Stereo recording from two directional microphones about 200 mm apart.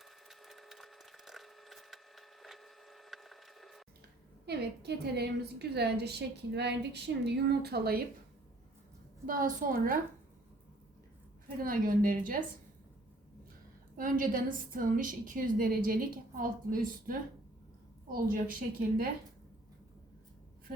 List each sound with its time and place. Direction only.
0.0 s wood: centre (ahead or behind)
4.4 s a woman's voice: 55° right (ahead or behind)
9.2 s a woman's voice: 45° right (ahead or behind)
11.6 s a woman's voice: 45° right (ahead or behind)
13.9 s a woman's voice: 45° right (ahead or behind)